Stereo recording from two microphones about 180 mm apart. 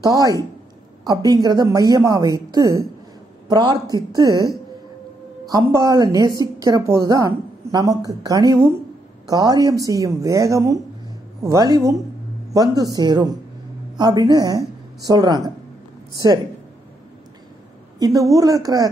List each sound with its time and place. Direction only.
0.0 s a woman's voice: 20° right (ahead or behind)
5.5 s a woman's voice: 20° right (ahead or behind)
17.9 s a woman's voice: 20° right (ahead or behind)